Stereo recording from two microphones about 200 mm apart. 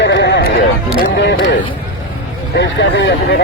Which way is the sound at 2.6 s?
65° left (ahead or behind).